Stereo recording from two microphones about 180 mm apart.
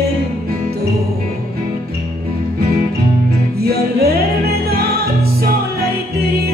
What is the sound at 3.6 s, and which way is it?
Music, 60° right (ahead or behind).